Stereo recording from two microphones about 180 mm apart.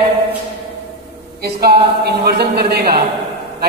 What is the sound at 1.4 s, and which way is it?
A man's voice, 60° right (ahead or behind).